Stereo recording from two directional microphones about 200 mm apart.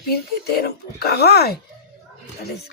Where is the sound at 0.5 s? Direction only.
50° left (ahead or behind).